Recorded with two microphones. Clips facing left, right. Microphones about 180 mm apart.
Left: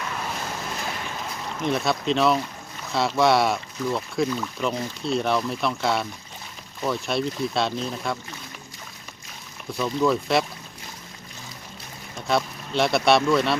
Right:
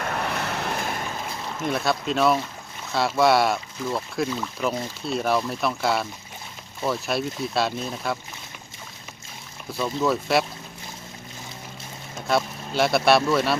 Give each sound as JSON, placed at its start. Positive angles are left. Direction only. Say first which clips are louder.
{"t": 0.0, "sound": "vehicle", "louder": "right 4 dB", "side_deg": -60}
{"t": 1.6, "sound": "speech", "louder": "left 1 dB", "side_deg": 0}
{"t": 9.8, "sound": "speech", "louder": "left 1 dB", "side_deg": -5}
{"t": 12.1, "sound": "speech", "louder": "even", "side_deg": 0}